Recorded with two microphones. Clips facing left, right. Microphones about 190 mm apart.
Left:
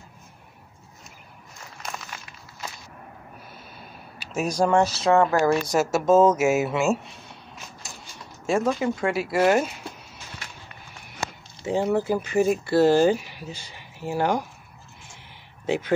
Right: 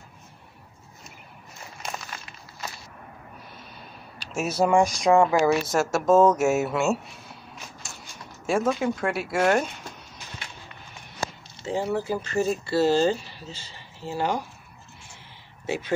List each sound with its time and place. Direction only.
4.2 s speech: centre (ahead or behind)
5.2 s speech: 5° right (ahead or behind)
11.6 s speech: 15° left (ahead or behind)